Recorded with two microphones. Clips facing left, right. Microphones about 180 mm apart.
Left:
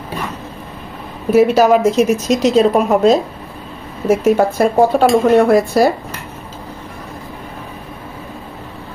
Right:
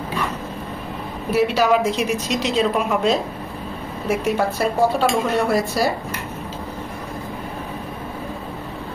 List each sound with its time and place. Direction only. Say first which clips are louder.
1.3 s a woman's voice: left 7 dB; 45° left (ahead or behind)